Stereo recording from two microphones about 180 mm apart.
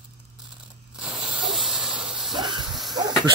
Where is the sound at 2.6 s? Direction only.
Centre (ahead or behind).